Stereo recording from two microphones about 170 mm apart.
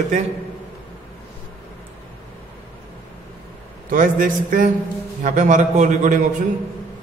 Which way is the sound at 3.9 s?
50° right (ahead or behind).